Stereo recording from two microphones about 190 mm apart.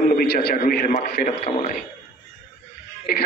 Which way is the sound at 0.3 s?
55° left (ahead or behind).